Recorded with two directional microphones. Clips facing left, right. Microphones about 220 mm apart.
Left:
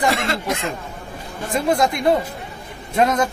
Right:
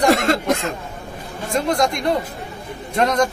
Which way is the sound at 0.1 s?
45° right (ahead or behind).